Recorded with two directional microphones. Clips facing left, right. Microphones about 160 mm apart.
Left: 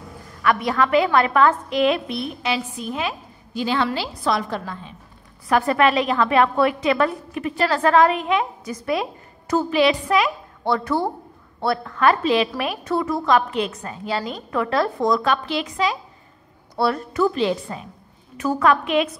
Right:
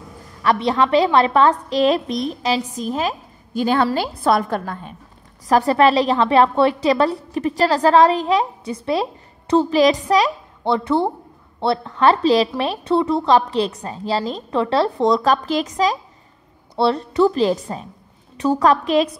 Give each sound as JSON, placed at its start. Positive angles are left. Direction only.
{"t": 0.4, "sound": "a woman's voice", "side_deg": -30}
{"t": 5.5, "sound": "a woman's voice", "side_deg": -35}
{"t": 10.6, "sound": "a woman's voice", "side_deg": -25}
{"t": 16.7, "sound": "a woman's voice", "side_deg": -30}